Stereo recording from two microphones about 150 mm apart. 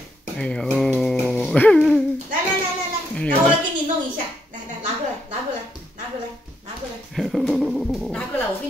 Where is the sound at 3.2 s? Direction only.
10° left (ahead or behind).